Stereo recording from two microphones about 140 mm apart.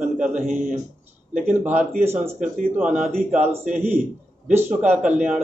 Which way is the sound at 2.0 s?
10° right (ahead or behind).